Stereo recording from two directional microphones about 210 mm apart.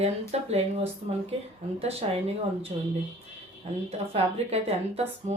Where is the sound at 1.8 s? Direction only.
30° right (ahead or behind).